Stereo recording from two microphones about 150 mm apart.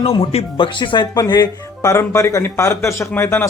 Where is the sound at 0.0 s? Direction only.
40° left (ahead or behind).